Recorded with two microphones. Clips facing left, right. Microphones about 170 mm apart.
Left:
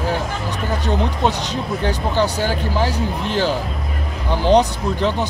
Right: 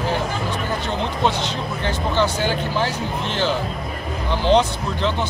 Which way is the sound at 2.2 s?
40° left (ahead or behind).